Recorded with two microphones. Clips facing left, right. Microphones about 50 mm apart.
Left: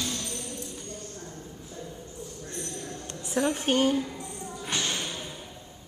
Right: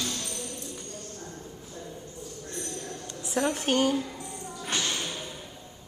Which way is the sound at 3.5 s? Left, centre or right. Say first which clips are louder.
Left 1 dB; left.